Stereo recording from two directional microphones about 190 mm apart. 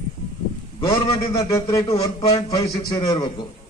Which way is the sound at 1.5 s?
15° left (ahead or behind).